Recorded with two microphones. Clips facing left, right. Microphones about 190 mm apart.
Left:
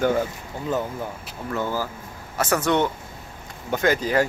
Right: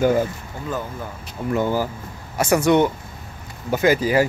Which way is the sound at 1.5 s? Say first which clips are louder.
Right 5 dB; 15° right (ahead or behind).